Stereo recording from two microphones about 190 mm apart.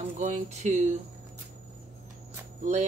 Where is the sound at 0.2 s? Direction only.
35° right (ahead or behind).